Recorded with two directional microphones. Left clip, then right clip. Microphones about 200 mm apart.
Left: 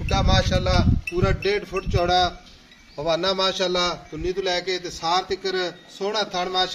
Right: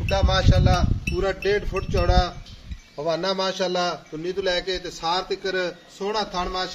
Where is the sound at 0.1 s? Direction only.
55° left (ahead or behind).